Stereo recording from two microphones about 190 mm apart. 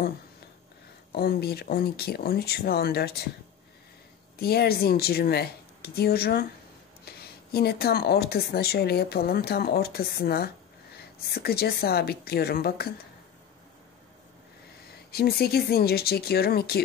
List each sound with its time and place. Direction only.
1.1 s speech: 55° left (ahead or behind)
4.4 s speech: 55° left (ahead or behind)
7.5 s speech: 55° left (ahead or behind)
15.0 s speech: 55° left (ahead or behind)